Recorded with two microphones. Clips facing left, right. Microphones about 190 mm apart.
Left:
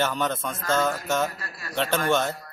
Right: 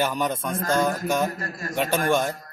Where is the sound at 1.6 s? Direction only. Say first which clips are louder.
Right 3 dB; 45° right (ahead or behind).